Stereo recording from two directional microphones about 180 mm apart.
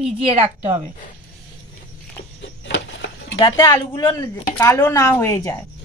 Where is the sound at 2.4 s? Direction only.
90° left.